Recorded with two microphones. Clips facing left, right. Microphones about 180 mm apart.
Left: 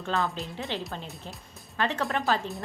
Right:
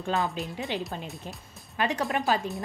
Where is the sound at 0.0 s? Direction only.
15° right (ahead or behind).